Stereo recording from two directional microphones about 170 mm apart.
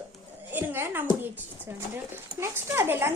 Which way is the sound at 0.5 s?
10° right (ahead or behind).